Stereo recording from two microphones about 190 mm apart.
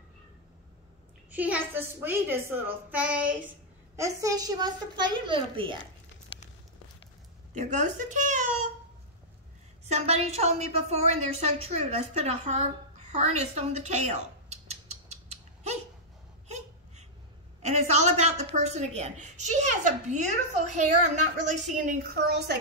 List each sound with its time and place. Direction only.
1.3 s a woman's voice: 10° right (ahead or behind); by 5.8 s 25° right (ahead or behind)
7.5 s speech: 40° right (ahead or behind)
9.8 s a woman's voice: 35° right (ahead or behind)
17.6 s a woman's voice: 35° right (ahead or behind); by 22.6 s 60° right (ahead or behind)